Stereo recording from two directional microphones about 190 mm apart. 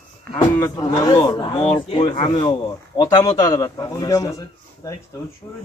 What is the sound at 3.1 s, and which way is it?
Speech, 20° left (ahead or behind).